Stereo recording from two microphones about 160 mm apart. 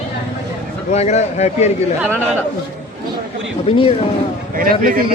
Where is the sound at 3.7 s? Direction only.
35° left (ahead or behind).